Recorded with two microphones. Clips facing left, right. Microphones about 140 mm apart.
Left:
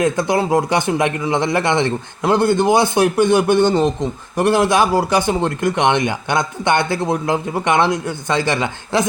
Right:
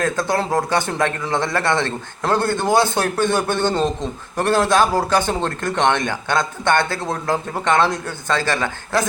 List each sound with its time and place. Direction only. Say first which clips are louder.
0.0 s a man's voice: left 4 dB; 15° left (ahead or behind)